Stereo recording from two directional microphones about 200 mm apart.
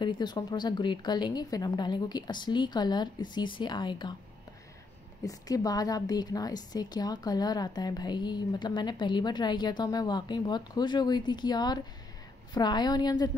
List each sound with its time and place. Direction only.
0.0 s a woman's voice: 20° left (ahead or behind)
5.2 s a woman's voice: 20° left (ahead or behind)